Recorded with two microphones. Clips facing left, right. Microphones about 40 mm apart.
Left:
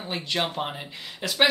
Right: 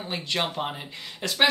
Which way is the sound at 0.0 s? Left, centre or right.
Centre.